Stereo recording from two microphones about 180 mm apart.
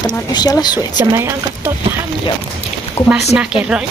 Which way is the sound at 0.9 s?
15° right (ahead or behind).